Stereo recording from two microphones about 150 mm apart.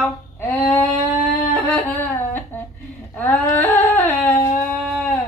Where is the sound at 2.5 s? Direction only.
10° left (ahead or behind).